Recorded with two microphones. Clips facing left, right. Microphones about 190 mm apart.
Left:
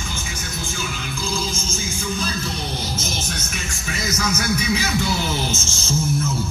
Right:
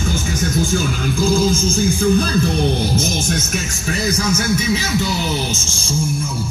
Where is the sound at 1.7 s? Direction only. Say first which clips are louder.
Right 12 dB; 60° right (ahead or behind).